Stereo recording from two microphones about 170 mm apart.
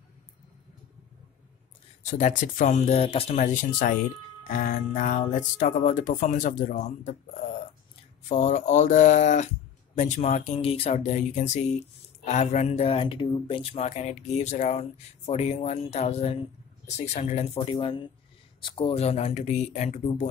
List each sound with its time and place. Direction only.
2.0 s speech: 45° left (ahead or behind)
8.3 s speech: 45° left (ahead or behind)
17.6 s speech: 30° left (ahead or behind)